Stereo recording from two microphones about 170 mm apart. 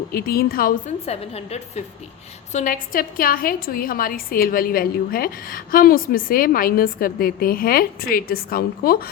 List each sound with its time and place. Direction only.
0.1 s a woman's voice: 60° left (ahead or behind)
1.0 s a woman's voice: 40° left (ahead or behind); by 9.0 s 60° left (ahead or behind)